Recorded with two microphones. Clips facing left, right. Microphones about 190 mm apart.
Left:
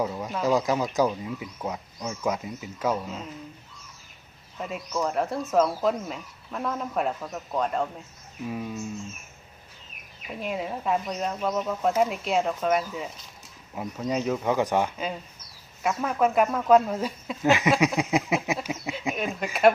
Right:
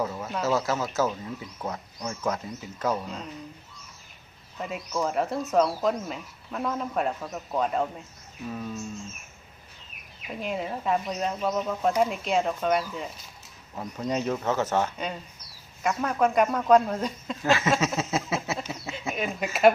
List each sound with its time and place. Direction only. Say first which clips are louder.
0.0 s a sound: left 2 dB; 10° left (ahead or behind)
0.4 s speech: left 3 dB; 15° left (ahead or behind)
4.5 s speech: even; centre (ahead or behind)
8.4 s speech: left 1 dB; 10° left (ahead or behind)
10.4 s speech: even; centre (ahead or behind)
14.9 s speech: left 1 dB; 5° left (ahead or behind)
17.4 s speech: left 3 dB; 15° left (ahead or behind)
19.1 s speech: even; centre (ahead or behind)